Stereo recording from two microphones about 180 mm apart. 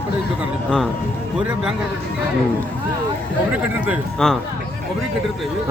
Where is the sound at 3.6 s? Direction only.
10° right (ahead or behind).